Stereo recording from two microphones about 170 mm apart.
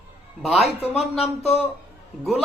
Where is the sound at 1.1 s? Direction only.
40° left (ahead or behind).